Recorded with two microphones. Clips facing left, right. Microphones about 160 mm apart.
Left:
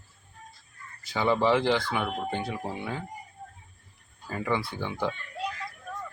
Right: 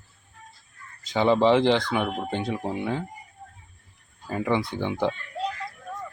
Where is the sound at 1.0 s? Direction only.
20° right (ahead or behind).